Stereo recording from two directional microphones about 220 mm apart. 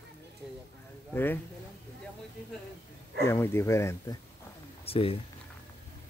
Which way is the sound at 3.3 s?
10° left (ahead or behind).